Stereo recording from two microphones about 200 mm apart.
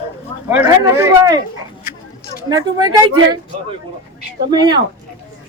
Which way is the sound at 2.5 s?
20° right (ahead or behind).